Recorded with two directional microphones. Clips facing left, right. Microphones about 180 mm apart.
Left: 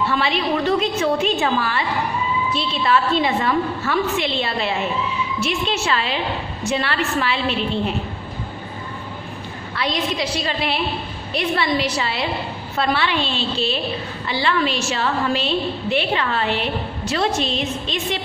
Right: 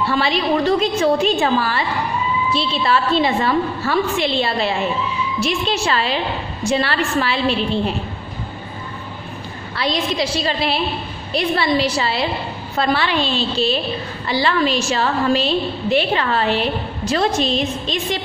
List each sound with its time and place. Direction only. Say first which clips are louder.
0.0 s a woman's voice: right 2 dB; 35° right (ahead or behind)
9.8 s a woman's voice: right 3 dB; 35° right (ahead or behind)